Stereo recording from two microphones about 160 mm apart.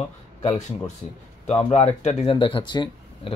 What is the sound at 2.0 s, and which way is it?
Speech, 35° left (ahead or behind).